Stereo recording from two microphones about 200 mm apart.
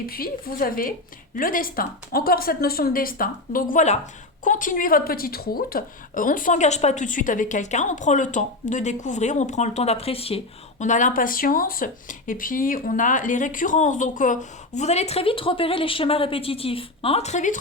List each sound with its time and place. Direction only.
0.0 s speech: 50° left (ahead or behind)